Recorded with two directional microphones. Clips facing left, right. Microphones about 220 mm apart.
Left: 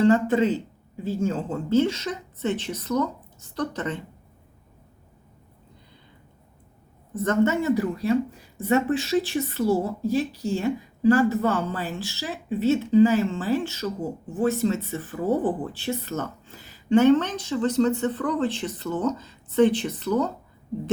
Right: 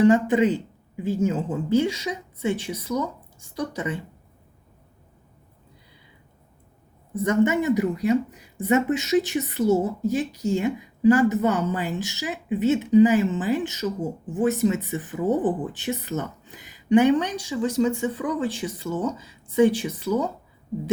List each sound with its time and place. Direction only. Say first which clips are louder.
0.0 s speech: right 1 dB; 15° right (ahead or behind)
7.1 s speech: right 1 dB; 10° right (ahead or behind)